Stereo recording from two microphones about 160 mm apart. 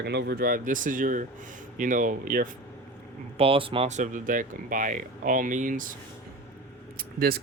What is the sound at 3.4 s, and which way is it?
Speech, 35° right (ahead or behind).